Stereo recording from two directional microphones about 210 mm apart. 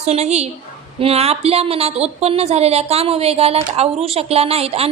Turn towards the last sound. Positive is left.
turn(degrees=-30)  # may be behind; listen again after turning